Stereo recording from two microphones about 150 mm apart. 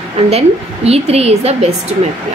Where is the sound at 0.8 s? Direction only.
45° right (ahead or behind).